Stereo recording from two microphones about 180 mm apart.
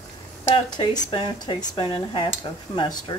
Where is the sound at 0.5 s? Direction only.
25° left (ahead or behind).